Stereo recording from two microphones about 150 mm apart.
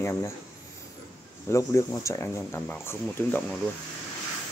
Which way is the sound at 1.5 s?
20° left (ahead or behind).